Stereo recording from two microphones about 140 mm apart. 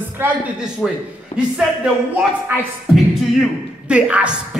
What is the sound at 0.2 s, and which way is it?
Speech, 15° right (ahead or behind).